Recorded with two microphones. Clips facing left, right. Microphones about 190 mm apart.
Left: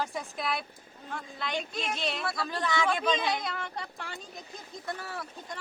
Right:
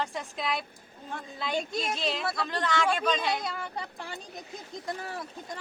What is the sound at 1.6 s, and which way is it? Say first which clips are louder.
Speech: right 3 dB; 45° right (ahead or behind).